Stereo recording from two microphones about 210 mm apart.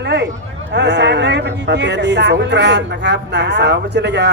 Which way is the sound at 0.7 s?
55° right (ahead or behind).